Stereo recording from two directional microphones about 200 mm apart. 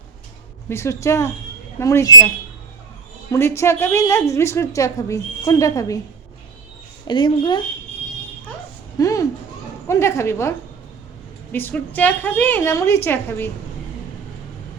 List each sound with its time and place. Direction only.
0.7 s a woman's voice: 15° left (ahead or behind)
3.3 s a woman's voice: 15° left (ahead or behind)
7.1 s speech: 25° left (ahead or behind)
9.0 s a sound: 15° left (ahead or behind)
9.8 s a woman's voice: 15° left (ahead or behind)
11.5 s a woman's voice: 10° left (ahead or behind)